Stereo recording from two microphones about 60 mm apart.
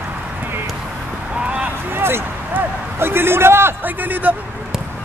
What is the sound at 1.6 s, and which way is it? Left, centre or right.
A man's voice, right.